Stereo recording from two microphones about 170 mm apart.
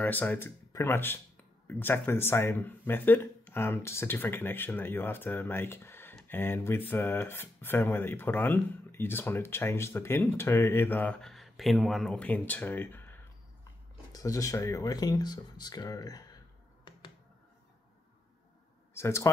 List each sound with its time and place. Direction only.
0.0 s speech: 10° left (ahead or behind)
18.9 s speech: 15° left (ahead or behind)